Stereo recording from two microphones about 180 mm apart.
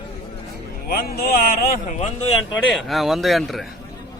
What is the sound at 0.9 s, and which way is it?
Speech, 55° left (ahead or behind).